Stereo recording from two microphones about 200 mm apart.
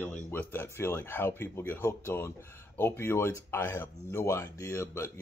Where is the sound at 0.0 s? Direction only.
5° left (ahead or behind).